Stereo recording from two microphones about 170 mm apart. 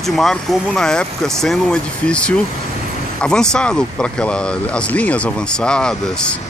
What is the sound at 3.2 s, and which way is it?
Speech, 5° left (ahead or behind).